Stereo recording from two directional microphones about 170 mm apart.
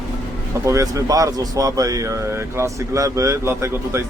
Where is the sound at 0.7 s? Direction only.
20° right (ahead or behind).